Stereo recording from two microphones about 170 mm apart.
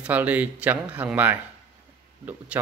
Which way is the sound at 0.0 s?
10° right (ahead or behind).